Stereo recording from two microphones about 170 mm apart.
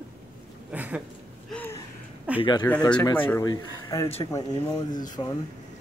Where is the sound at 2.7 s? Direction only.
10° left (ahead or behind).